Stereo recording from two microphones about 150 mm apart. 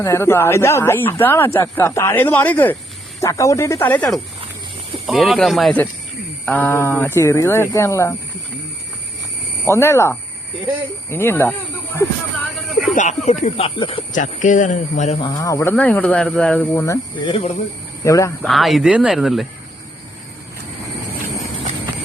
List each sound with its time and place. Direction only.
0.0 s speech: 15° left (ahead or behind)
5.0 s speech: centre (ahead or behind)
6.4 s speech: 10° left (ahead or behind)
9.6 s speech: 20° left (ahead or behind)
12.9 s speech: 55° left (ahead or behind)
13.7 s speech: 35° left (ahead or behind)
14.1 s speech: 55° left (ahead or behind)
15.2 s speech: 25° left (ahead or behind)
15.7 s speech: 10° left (ahead or behind)
17.2 s speech: 40° left (ahead or behind)
18.0 s speech: 20° left (ahead or behind)
18.4 s speech: centre (ahead or behind)